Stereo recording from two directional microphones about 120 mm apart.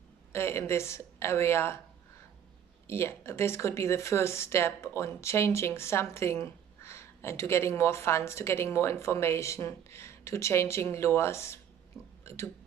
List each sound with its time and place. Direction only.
0.3 s speech: 20° left (ahead or behind)
2.9 s speech: 20° left (ahead or behind)
11.9 s speech: centre (ahead or behind)